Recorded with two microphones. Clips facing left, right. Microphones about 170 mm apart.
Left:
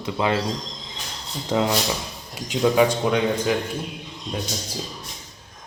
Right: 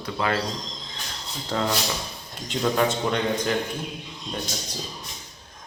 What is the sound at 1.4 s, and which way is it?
Speech, 15° left (ahead or behind).